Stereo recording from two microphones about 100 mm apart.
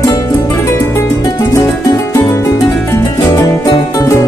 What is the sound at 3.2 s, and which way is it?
Music, 35° left (ahead or behind).